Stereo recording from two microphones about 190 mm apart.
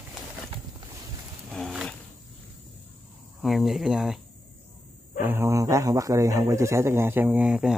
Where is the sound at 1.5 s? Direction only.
Centre (ahead or behind).